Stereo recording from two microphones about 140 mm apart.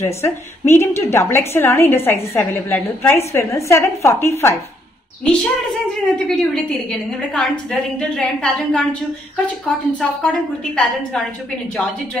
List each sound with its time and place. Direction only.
0.0 s a woman's voice: 20° left (ahead or behind)
5.2 s a woman's voice: 5° left (ahead or behind)